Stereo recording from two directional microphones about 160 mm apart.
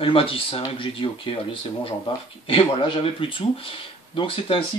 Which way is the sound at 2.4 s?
30° left (ahead or behind).